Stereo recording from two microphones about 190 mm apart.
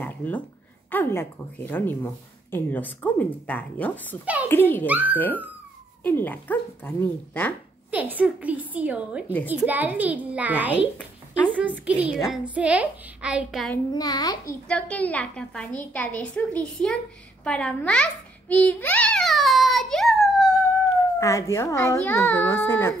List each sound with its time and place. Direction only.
0.0 s a sound: 10° left (ahead or behind)
0.8 s a child's voice: 10° left (ahead or behind)
4.8 s a woman's voice: 10° right (ahead or behind)
5.1 s a child's voice: 10° left (ahead or behind)
7.9 s a woman's voice: 10° right (ahead or behind)
13.9 s a child's voice: 20° left (ahead or behind)
14.5 s a woman's voice: 5° left (ahead or behind)
21.2 s a child's voice: 15° left (ahead or behind)